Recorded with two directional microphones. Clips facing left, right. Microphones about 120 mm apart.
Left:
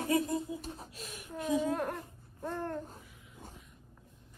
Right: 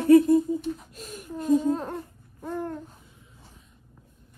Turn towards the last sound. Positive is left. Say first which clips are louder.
# left 2 dB
turn(degrees=40)  # may be behind; listen again after turning